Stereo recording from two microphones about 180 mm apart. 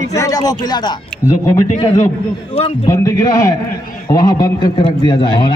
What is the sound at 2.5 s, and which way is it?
Speech, 35° left (ahead or behind).